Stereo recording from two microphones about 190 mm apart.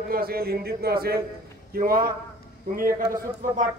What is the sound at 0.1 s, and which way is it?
A man's voice, 50° right (ahead or behind).